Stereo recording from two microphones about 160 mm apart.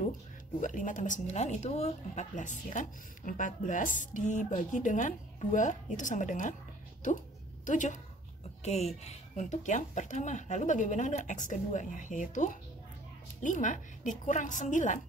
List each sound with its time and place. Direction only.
0.6 s speech: 55° left (ahead or behind)
7.6 s speech: 50° left (ahead or behind)